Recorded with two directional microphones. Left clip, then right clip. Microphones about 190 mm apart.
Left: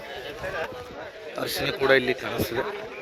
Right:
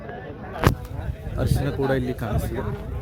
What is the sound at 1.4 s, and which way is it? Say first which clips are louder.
Speech: left 1 dB; 15° left (ahead or behind).